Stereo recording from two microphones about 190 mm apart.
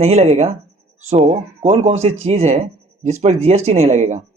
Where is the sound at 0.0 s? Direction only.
35° right (ahead or behind).